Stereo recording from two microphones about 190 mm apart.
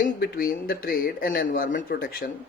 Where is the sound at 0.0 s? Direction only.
50° left (ahead or behind).